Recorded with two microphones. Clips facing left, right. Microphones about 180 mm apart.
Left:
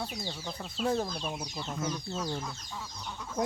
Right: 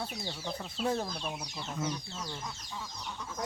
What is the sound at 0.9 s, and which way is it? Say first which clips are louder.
Speech: left 3 dB; 10° left (ahead or behind).